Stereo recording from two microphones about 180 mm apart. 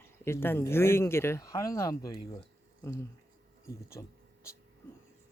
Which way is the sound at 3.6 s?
15° left (ahead or behind).